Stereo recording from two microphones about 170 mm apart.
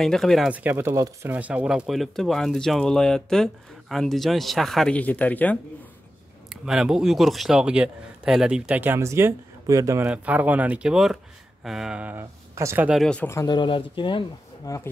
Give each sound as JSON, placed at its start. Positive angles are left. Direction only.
{"t": 0.0, "sound": "speech", "side_deg": 0}
{"t": 6.5, "sound": "speech", "side_deg": -5}
{"t": 10.0, "sound": "speech", "side_deg": -10}
{"t": 12.9, "sound": "speech", "side_deg": 5}
{"t": 13.6, "sound": "speech", "side_deg": 30}